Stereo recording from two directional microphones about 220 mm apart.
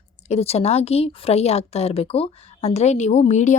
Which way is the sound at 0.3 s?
30° left (ahead or behind).